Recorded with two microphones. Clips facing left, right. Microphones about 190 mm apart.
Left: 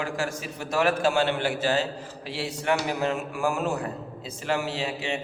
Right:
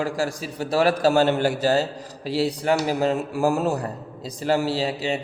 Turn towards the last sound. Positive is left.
turn(degrees=-35)  # may be behind; listen again after turning